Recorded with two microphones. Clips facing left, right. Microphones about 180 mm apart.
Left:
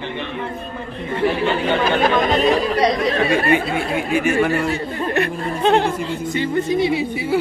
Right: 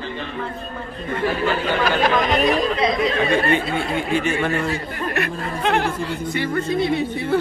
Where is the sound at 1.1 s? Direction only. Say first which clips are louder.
Left 3 dB; 25° left (ahead or behind).